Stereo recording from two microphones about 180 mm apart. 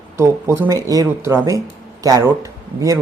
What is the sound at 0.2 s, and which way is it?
Speech, 15° right (ahead or behind).